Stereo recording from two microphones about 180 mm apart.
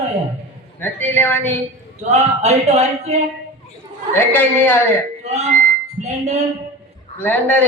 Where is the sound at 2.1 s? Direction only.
40° right (ahead or behind).